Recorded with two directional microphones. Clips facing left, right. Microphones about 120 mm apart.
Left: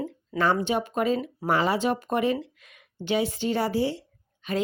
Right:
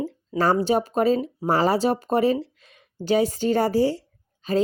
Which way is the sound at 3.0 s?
40° right (ahead or behind).